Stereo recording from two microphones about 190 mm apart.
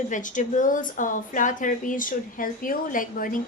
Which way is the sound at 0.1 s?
40° left (ahead or behind).